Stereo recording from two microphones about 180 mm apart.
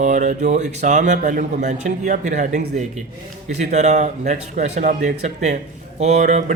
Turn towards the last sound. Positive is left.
turn(degrees=-40)  # may be behind; listen again after turning